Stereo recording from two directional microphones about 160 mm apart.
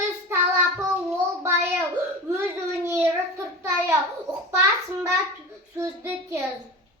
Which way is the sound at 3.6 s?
15° right (ahead or behind).